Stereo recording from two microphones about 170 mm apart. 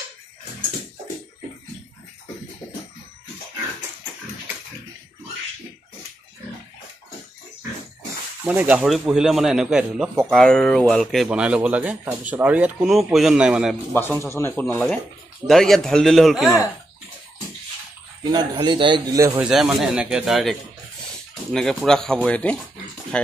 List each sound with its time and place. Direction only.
8.5 s speech: 10° right (ahead or behind)
13.9 s a man's voice: 15° left (ahead or behind)
18.3 s speech: 25° right (ahead or behind)
19.4 s speech: 5° right (ahead or behind)